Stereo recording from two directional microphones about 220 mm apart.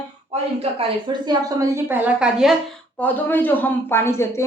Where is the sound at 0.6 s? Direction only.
25° right (ahead or behind); by 2.6 s 5° right (ahead or behind).